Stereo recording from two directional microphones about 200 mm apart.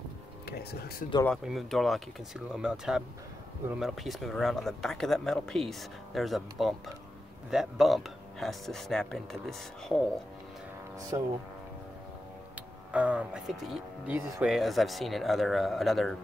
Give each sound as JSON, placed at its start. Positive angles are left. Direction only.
{"t": 0.5, "sound": "speech", "side_deg": 55}
{"t": 1.2, "sound": "speech", "side_deg": 0}
{"t": 11.1, "sound": "speech", "side_deg": -15}
{"t": 12.9, "sound": "speech", "side_deg": -5}